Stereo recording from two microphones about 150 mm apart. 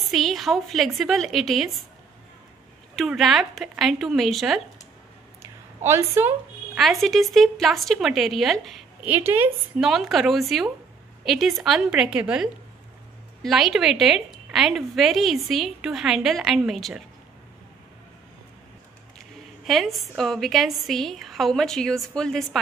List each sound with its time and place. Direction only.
0.1 s a woman's voice: centre (ahead or behind)
3.0 s a woman's voice: centre (ahead or behind)
5.9 s speech: 15° right (ahead or behind)
6.8 s a woman's voice: centre (ahead or behind)
9.1 s a woman's voice: 15° right (ahead or behind)
9.8 s a woman's voice: centre (ahead or behind)
19.1 s a woman's voice: centre (ahead or behind)